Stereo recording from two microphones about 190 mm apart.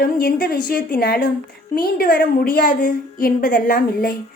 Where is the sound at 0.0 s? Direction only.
50° left (ahead or behind).